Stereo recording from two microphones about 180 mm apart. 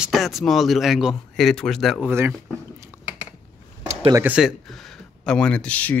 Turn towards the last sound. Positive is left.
turn(degrees=5)  # may be behind; listen again after turning